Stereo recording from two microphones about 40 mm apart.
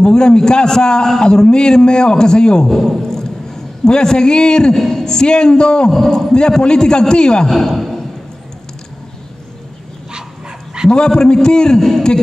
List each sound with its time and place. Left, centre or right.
0.0 s a man's voice: centre
2.7 s a man's voice: centre
7.4 s a man's voice: centre
10.9 s a man's voice: centre